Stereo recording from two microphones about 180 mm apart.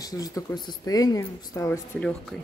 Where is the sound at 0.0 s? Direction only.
20° left (ahead or behind).